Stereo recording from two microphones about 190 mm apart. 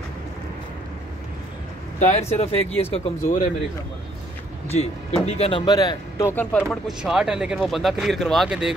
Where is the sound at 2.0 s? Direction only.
40° left (ahead or behind).